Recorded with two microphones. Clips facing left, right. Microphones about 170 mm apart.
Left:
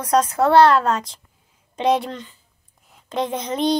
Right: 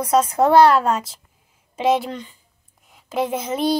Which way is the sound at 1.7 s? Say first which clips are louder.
Even; 5° right (ahead or behind).